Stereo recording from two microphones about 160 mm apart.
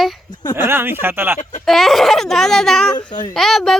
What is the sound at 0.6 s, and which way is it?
Speech, 15° right (ahead or behind).